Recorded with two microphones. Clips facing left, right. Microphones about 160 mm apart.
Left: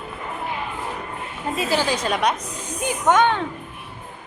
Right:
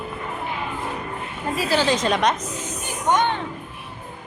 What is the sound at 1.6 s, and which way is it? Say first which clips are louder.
Speech: right 2 dB; 15° left (ahead or behind).